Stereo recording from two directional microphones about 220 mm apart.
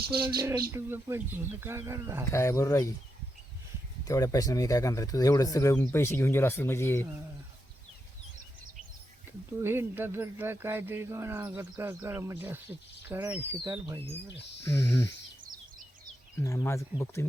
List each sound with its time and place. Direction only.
0.3 s speech: 20° right (ahead or behind)
2.3 s speech: 10° left (ahead or behind)
4.0 s speech: 15° left (ahead or behind)
9.6 s speech: 10° right (ahead or behind)
14.6 s speech: 10° left (ahead or behind)
16.4 s speech: 15° left (ahead or behind)